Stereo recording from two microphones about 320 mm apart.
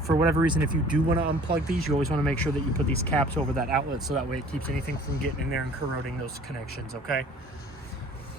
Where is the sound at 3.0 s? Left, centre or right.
Centre.